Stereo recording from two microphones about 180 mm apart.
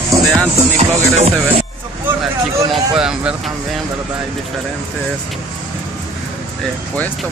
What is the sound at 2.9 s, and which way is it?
Speech, 5° right (ahead or behind).